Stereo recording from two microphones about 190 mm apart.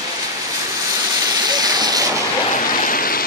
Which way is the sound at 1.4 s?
20° right (ahead or behind).